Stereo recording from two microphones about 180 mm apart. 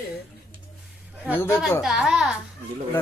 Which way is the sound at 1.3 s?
15° left (ahead or behind).